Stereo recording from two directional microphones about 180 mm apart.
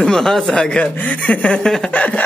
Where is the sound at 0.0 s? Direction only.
5° left (ahead or behind).